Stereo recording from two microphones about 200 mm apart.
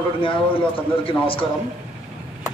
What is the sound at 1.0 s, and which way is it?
Speech, 25° left (ahead or behind).